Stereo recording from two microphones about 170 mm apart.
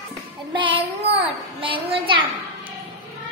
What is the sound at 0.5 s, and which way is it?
Child singing, 30° right (ahead or behind).